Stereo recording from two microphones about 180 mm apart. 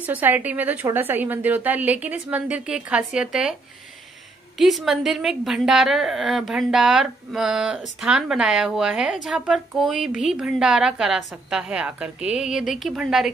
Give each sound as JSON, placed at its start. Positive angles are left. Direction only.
{"t": 0.0, "sound": "a woman's voice", "side_deg": -10}
{"t": 4.6, "sound": "a woman's voice", "side_deg": 0}